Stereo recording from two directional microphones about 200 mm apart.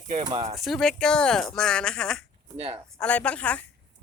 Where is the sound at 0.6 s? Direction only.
Centre (ahead or behind).